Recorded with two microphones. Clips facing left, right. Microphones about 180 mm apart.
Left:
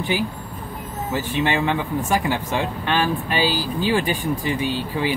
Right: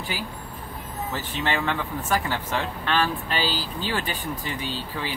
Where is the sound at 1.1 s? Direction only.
15° left (ahead or behind).